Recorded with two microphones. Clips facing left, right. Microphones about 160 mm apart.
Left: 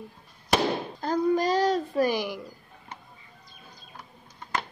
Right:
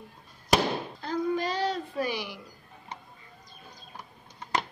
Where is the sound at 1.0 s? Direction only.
40° left (ahead or behind).